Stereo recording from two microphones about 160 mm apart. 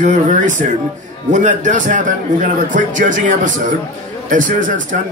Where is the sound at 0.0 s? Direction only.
50° right (ahead or behind).